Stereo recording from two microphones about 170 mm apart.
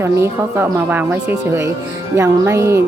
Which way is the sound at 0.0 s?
15° right (ahead or behind).